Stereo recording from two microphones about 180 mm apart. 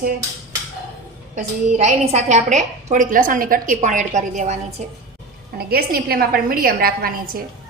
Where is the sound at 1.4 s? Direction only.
40° right (ahead or behind).